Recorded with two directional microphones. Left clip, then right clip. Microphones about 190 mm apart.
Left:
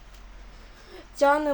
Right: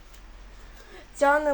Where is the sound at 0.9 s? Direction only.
20° left (ahead or behind).